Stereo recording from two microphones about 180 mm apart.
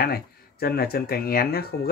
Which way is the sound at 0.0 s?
60° left (ahead or behind).